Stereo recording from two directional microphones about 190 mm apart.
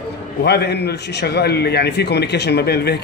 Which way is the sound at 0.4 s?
60° left (ahead or behind).